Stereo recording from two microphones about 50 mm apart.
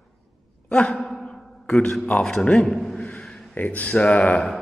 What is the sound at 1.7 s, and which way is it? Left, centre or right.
A man's voice, left.